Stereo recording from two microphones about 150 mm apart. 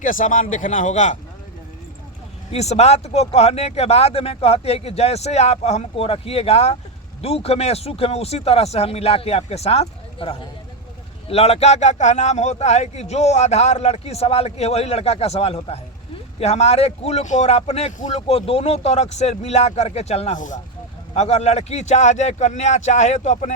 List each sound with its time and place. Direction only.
0.0 s a man's voice: 60° left (ahead or behind)
2.5 s a man's voice: 45° left (ahead or behind)